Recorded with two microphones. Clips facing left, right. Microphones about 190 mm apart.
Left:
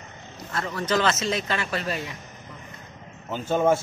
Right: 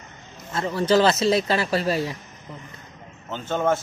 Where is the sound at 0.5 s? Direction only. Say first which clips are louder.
Right 6 dB; 25° right (ahead or behind).